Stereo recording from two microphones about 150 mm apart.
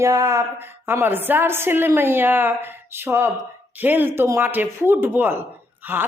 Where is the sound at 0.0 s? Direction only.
20° right (ahead or behind).